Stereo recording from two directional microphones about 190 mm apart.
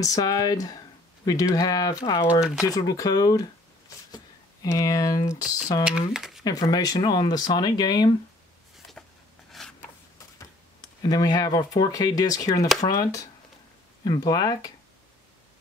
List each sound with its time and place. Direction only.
0.0 s speech: 20° left (ahead or behind)
5.9 s speech: 5° right (ahead or behind)
6.4 s speech: 20° left (ahead or behind)
9.5 s a sound: 5° left (ahead or behind)
11.0 s speech: 20° left (ahead or behind)